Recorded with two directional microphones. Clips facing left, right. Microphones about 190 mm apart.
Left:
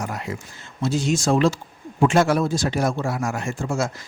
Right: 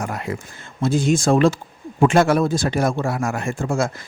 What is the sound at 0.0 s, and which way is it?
Speech, 55° right (ahead or behind).